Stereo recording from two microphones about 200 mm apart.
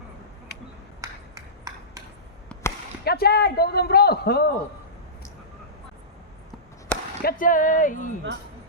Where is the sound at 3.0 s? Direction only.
50° left (ahead or behind).